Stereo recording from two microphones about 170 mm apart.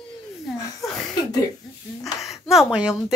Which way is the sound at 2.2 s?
Centre (ahead or behind).